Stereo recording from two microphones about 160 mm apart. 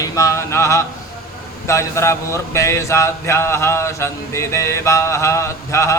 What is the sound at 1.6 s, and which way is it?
Speech, 15° left (ahead or behind).